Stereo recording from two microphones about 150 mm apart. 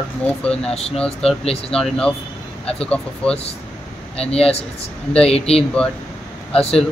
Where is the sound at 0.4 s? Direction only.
5° left (ahead or behind).